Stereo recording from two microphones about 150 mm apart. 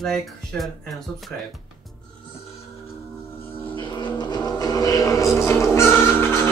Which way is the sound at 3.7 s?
30° left (ahead or behind).